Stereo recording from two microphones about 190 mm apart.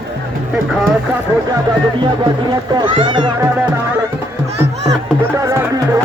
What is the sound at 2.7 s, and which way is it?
Speech, 25° right (ahead or behind).